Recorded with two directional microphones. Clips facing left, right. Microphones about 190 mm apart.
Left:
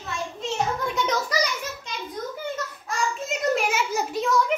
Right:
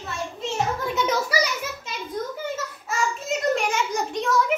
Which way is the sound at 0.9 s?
5° right (ahead or behind).